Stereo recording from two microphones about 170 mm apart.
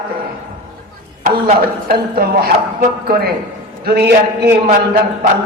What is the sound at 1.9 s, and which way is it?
Speech, 60° right (ahead or behind).